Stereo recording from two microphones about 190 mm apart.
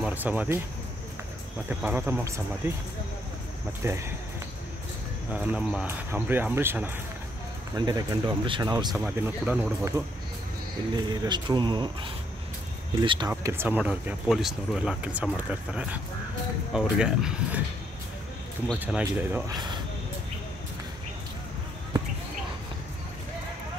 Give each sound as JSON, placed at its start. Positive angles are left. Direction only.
{"t": 0.0, "sound": "speech", "side_deg": -10}
{"t": 1.7, "sound": "speech", "side_deg": -10}
{"t": 3.8, "sound": "speech", "side_deg": -15}
{"t": 5.3, "sound": "speech", "side_deg": -5}
{"t": 8.7, "sound": "speech", "side_deg": -15}
{"t": 13.3, "sound": "speech", "side_deg": -10}
{"t": 18.8, "sound": "speech", "side_deg": -10}
{"t": 19.5, "sound": "speech", "side_deg": -25}